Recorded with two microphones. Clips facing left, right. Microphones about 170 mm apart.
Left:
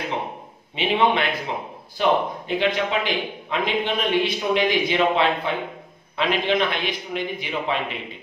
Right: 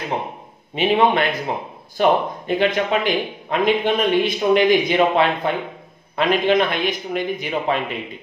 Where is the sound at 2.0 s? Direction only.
50° right (ahead or behind).